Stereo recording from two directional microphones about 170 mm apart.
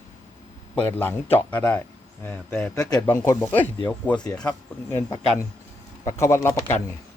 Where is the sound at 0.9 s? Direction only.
10° left (ahead or behind).